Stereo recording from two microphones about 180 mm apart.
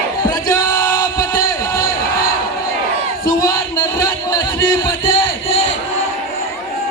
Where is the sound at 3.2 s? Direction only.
20° left (ahead or behind).